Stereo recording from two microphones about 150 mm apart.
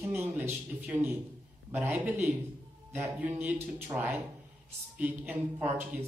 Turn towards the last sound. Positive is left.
turn(degrees=-15)  # may be behind; listen again after turning